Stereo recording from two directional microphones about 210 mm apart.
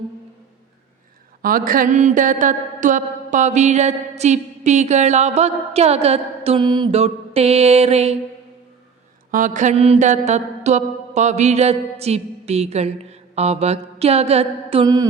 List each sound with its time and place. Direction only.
1.4 s speech: 40° right (ahead or behind)
9.3 s speech: 40° right (ahead or behind); by 15.0 s 25° right (ahead or behind)